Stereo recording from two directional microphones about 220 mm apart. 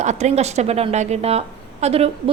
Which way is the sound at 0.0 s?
30° right (ahead or behind).